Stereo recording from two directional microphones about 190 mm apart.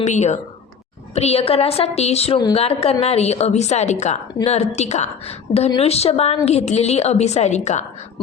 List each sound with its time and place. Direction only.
0.0 s a woman's voice: 40° left (ahead or behind)